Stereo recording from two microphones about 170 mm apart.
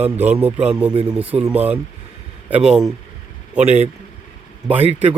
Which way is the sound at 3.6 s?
40° right (ahead or behind).